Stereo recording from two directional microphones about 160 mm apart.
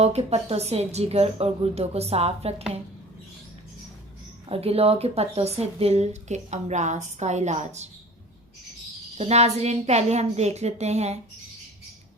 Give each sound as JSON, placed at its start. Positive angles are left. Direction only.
{"t": 0.0, "sound": "a woman's voice", "side_deg": -40}
{"t": 4.4, "sound": "speech", "side_deg": -40}
{"t": 9.1, "sound": "speech", "side_deg": -40}